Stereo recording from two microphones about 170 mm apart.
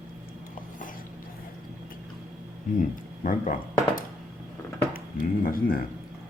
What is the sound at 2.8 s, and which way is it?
Speech, 50° left (ahead or behind).